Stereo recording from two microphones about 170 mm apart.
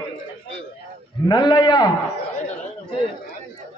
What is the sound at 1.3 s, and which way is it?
Speech, 25° left (ahead or behind).